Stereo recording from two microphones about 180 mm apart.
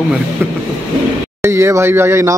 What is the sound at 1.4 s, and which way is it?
Speech, 15° right (ahead or behind).